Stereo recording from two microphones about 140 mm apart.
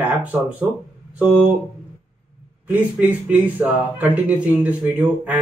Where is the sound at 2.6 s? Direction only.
10° right (ahead or behind).